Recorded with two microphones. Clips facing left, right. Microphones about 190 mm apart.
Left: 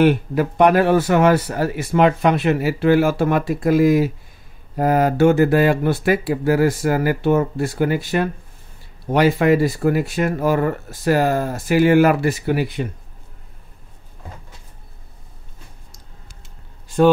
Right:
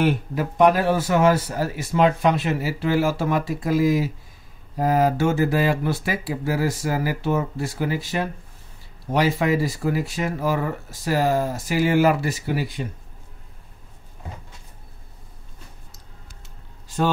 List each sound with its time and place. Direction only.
0.0 s speech: 65° left (ahead or behind)